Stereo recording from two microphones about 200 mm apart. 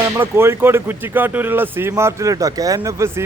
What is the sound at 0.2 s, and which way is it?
A man's voice, 10° right (ahead or behind).